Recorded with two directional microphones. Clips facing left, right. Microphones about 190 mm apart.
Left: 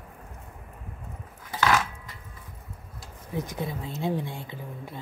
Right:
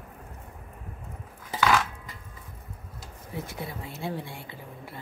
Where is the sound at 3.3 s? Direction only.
20° left (ahead or behind).